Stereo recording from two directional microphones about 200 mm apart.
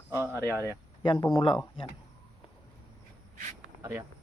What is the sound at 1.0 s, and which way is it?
Speech, 20° left (ahead or behind).